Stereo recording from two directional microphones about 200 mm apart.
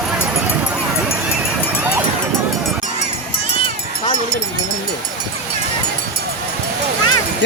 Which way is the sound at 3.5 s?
25° left (ahead or behind).